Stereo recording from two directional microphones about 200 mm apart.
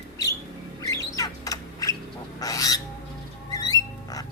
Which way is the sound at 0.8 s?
15° left (ahead or behind).